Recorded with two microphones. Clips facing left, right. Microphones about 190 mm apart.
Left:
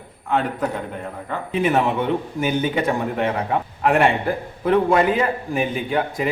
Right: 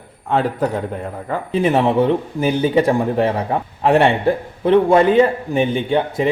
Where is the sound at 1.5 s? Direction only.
30° right (ahead or behind).